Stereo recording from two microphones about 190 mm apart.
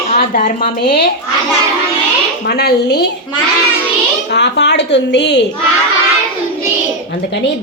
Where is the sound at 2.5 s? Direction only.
60° left (ahead or behind).